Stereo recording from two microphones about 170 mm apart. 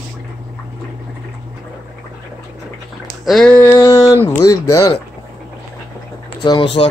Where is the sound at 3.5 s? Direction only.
15° left (ahead or behind).